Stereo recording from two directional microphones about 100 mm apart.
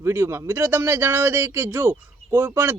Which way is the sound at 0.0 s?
25° right (ahead or behind).